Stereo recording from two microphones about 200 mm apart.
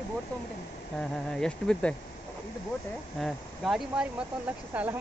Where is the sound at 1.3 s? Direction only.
5° left (ahead or behind).